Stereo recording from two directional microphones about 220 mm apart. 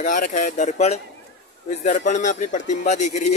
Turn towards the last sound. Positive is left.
turn(degrees=35)  # may be behind; listen again after turning